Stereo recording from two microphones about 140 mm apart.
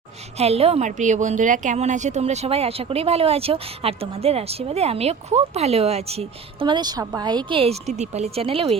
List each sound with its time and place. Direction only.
0.3 s a woman's voice: 45° right (ahead or behind)